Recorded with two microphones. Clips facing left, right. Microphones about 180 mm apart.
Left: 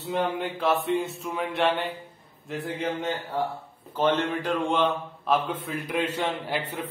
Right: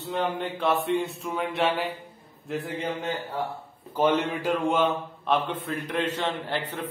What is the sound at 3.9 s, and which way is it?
A man's voice, 10° right (ahead or behind).